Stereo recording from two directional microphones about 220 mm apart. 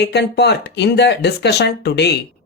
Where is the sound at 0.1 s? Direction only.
50° left (ahead or behind).